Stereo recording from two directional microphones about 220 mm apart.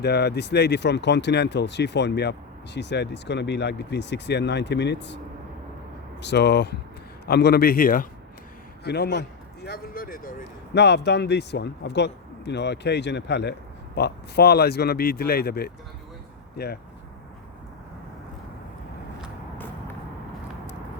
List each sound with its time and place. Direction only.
0.0 s speech: 50° left (ahead or behind)
6.2 s speech: 50° left (ahead or behind)